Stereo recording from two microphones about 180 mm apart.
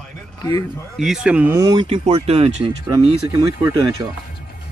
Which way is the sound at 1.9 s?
35° right (ahead or behind).